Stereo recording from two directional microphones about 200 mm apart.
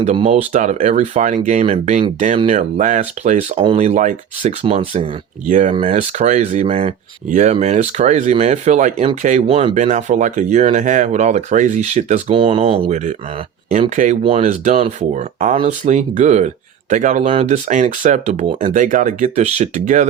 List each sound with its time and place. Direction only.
0.2 s speech: 30° right (ahead or behind)
5.5 s speech: 40° right (ahead or behind)